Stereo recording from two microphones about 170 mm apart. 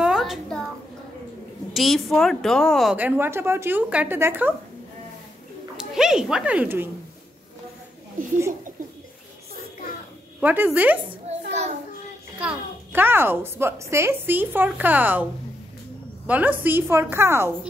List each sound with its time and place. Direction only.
0.0 s a sound: centre (ahead or behind)
1.7 s a woman's voice: centre (ahead or behind)
5.8 s speech: 5° right (ahead or behind)
10.4 s a woman's voice: 10° right (ahead or behind)
11.4 s child singing: 40° right (ahead or behind)
12.4 s a woman's voice: 10° right (ahead or behind)
16.3 s a woman's voice: 10° right (ahead or behind)